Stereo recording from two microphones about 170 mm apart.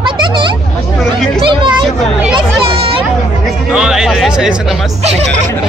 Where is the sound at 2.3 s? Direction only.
30° right (ahead or behind).